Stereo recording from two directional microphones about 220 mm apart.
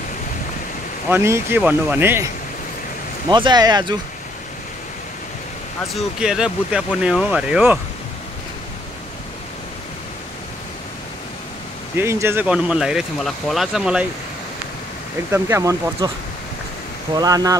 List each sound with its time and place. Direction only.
1.1 s speech: 10° right (ahead or behind)
5.9 s speech: 5° right (ahead or behind)
12.0 s speech: 10° right (ahead or behind)
15.3 s speech: 10° right (ahead or behind)
17.2 s speech: 15° right (ahead or behind)